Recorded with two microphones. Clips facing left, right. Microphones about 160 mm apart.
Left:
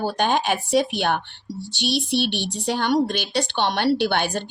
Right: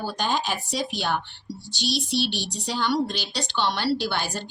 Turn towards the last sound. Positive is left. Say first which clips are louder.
# left 5 dB
turn(degrees=60)  # may be behind; listen again after turning